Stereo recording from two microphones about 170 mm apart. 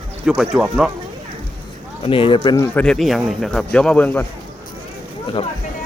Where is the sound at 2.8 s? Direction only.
5° left (ahead or behind).